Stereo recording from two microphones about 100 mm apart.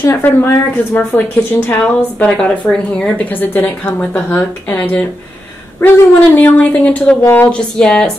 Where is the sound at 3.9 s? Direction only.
20° left (ahead or behind).